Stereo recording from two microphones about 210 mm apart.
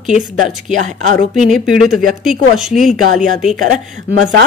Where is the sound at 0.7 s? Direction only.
35° right (ahead or behind).